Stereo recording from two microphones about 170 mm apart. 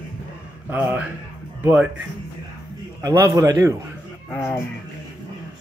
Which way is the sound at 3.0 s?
20° right (ahead or behind).